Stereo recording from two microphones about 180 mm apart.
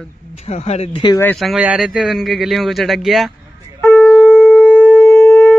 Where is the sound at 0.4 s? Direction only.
35° left (ahead or behind).